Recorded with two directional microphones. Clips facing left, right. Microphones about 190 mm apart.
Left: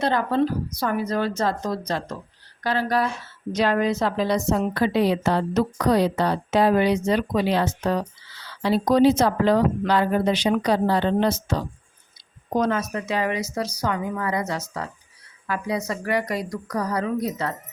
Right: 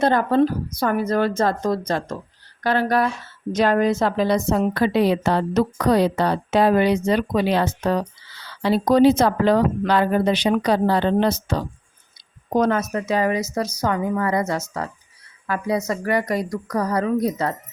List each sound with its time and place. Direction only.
0.0 s a woman's voice: 50° right (ahead or behind)
12.5 s a woman's voice: 50° right (ahead or behind)